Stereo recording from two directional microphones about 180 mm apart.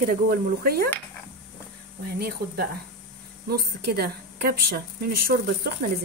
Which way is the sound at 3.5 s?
60° right (ahead or behind).